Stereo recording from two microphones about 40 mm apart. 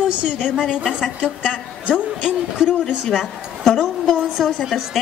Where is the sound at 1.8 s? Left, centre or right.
Centre.